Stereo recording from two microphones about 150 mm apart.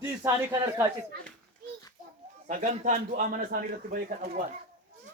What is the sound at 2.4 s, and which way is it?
A man's voice, 50° right (ahead or behind).